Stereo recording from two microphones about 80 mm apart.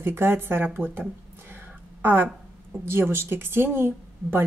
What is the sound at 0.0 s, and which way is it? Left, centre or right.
Speech, right.